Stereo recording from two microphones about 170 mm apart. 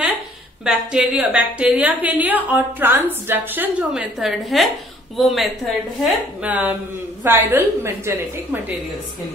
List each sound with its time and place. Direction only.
0.7 s a woman's voice: 5° right (ahead or behind)